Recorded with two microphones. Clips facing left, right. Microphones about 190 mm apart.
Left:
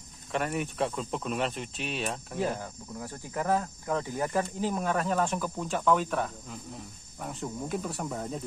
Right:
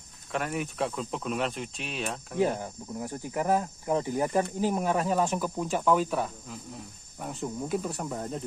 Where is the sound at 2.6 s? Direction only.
20° right (ahead or behind); by 8.4 s centre (ahead or behind).